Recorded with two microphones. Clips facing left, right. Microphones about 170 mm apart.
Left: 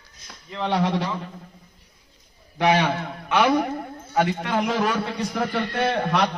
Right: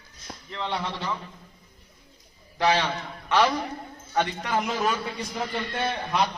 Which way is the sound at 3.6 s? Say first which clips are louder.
Left 7 dB; 65° left (ahead or behind).